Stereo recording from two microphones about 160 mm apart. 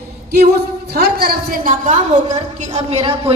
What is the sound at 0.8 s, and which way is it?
A woman's voice, 80° right.